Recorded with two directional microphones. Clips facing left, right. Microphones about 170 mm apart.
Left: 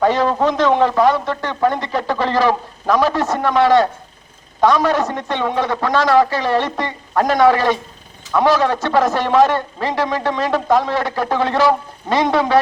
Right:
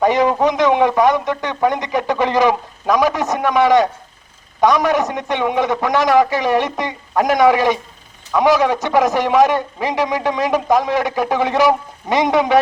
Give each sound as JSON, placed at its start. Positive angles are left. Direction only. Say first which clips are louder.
{"t": 0.0, "sound": "a man's voice", "louder": "right 1 dB", "side_deg": -15}